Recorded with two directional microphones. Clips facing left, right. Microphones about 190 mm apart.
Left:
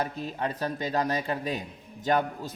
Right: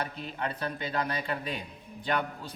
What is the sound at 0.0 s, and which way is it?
A man's voice, 40° left (ahead or behind).